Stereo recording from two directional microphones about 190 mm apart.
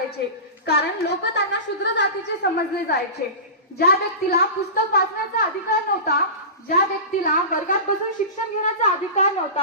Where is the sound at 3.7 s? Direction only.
55° left (ahead or behind).